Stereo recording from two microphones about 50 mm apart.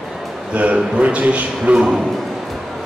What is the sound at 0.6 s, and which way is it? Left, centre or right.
A man's voice, right.